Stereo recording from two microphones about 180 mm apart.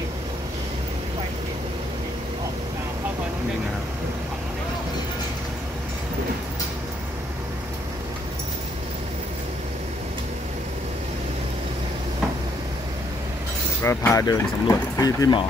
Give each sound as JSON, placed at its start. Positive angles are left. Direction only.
{"t": 13.8, "sound": "speech", "side_deg": 15}